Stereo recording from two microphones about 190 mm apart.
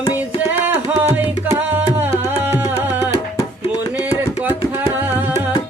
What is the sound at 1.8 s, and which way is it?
Tabla, 10° right (ahead or behind).